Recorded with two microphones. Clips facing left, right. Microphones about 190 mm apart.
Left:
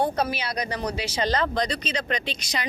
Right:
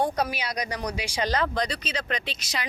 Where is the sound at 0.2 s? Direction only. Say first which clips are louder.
Left 2 dB; 15° right (ahead or behind).